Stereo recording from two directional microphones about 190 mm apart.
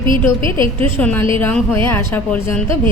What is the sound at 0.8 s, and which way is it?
A woman's voice, 10° left (ahead or behind).